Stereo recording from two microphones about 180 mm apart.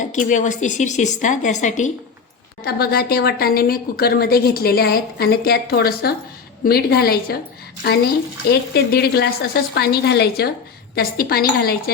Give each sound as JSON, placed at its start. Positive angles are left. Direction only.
{"t": 0.0, "sound": "a woman's voice", "side_deg": 45}
{"t": 2.6, "sound": "a woman's voice", "side_deg": 60}